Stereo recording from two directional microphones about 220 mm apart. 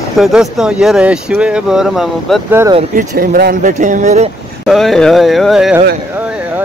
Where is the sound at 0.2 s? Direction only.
5° right (ahead or behind).